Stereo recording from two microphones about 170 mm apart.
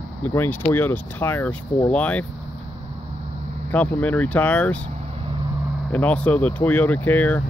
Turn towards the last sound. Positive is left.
turn(degrees=10)  # may be behind; listen again after turning